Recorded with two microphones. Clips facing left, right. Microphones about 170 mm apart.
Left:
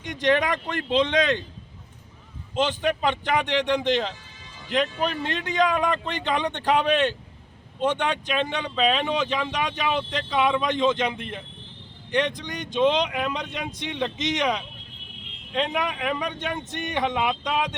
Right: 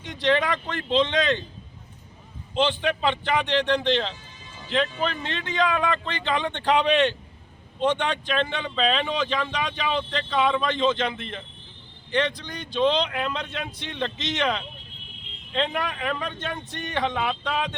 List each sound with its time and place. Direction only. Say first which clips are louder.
0.0 s speech: left 1 dB; 15° left (ahead or behind)
2.6 s speech: left 2 dB; 10° left (ahead or behind)